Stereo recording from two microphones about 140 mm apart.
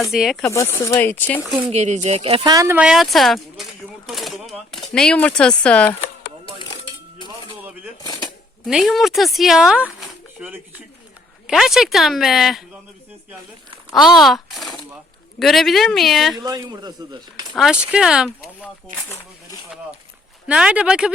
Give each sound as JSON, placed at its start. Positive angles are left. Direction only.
{"t": 0.0, "sound": "speech", "side_deg": 0}
{"t": 0.5, "sound": "speech", "side_deg": 20}
{"t": 1.7, "sound": "speech", "side_deg": -55}
{"t": 2.4, "sound": "speech", "side_deg": -25}
{"t": 2.7, "sound": "speech", "side_deg": -5}
{"t": 6.4, "sound": "cutlery", "side_deg": 35}
{"t": 8.0, "sound": "a sound", "side_deg": 30}
{"t": 8.6, "sound": "speech", "side_deg": 0}
{"t": 13.9, "sound": "speech", "side_deg": 0}
{"t": 16.4, "sound": "speech", "side_deg": -30}
{"t": 17.6, "sound": "speech", "side_deg": -5}
{"t": 19.0, "sound": "speech", "side_deg": 15}
{"t": 20.5, "sound": "speech", "side_deg": -10}